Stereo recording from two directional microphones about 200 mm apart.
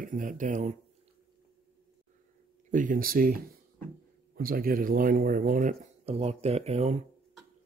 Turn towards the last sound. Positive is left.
turn(degrees=-35)  # may be behind; listen again after turning